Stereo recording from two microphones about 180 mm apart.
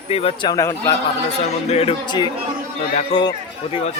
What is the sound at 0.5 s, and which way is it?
Speech, 15° left (ahead or behind).